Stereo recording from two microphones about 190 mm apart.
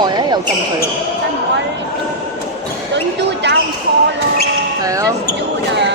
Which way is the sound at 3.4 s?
65° right (ahead or behind).